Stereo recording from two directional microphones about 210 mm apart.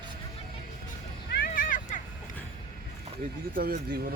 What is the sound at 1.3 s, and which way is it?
Vehicle, 45° left (ahead or behind).